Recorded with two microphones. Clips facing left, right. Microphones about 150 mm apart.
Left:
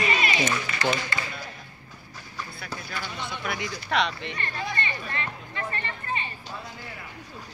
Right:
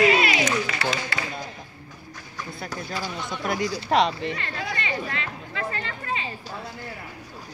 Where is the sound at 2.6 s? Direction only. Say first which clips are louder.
Right 6 dB; 40° right (ahead or behind).